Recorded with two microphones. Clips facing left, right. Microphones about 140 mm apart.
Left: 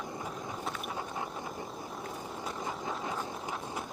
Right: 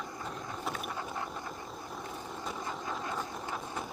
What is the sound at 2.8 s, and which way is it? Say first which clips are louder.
Vehicle: left 1 dB; 20° left (ahead or behind).